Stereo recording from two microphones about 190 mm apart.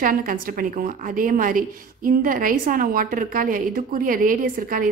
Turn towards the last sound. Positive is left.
turn(degrees=-45)  # may be behind; listen again after turning